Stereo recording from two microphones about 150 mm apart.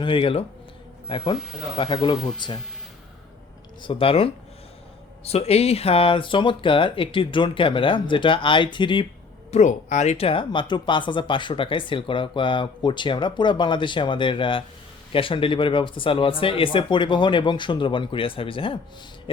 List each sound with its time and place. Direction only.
0.0 s speech: 35° left (ahead or behind)
3.8 s speech: 35° left (ahead or behind)
9.5 s speech: 50° left (ahead or behind); by 18.8 s 35° left (ahead or behind)